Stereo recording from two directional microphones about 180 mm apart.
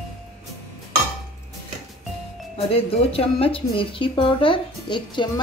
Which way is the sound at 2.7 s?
30° left (ahead or behind).